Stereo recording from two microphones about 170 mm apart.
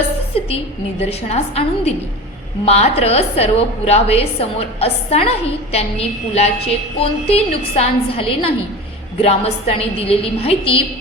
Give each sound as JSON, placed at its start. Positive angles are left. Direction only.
{"t": 0.3, "sound": "a woman's voice", "side_deg": 35}